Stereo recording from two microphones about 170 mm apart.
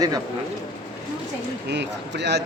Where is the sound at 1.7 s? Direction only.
90° right.